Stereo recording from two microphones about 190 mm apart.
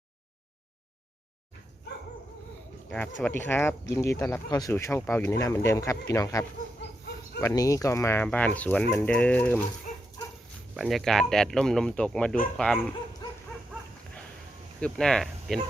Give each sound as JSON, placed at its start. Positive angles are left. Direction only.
{"t": 3.2, "sound": "speech", "side_deg": 10}
{"t": 7.4, "sound": "speech", "side_deg": 20}
{"t": 10.8, "sound": "speech", "side_deg": 0}
{"t": 14.8, "sound": "speech", "side_deg": 5}